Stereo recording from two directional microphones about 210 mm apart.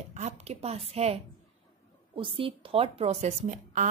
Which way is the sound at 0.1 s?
30° right (ahead or behind).